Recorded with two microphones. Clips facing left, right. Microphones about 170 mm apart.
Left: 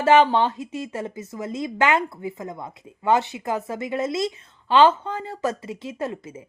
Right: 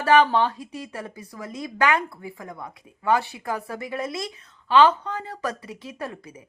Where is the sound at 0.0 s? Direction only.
25° left (ahead or behind).